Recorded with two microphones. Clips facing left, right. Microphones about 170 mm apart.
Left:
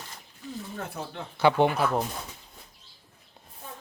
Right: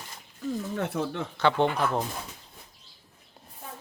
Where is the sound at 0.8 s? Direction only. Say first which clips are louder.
Right 7 dB; 75° right (ahead or behind).